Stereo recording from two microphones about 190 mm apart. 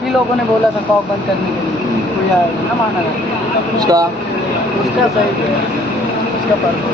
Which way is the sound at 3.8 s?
20° right (ahead or behind).